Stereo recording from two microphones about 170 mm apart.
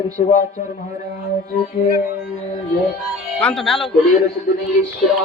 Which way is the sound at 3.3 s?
5° left (ahead or behind).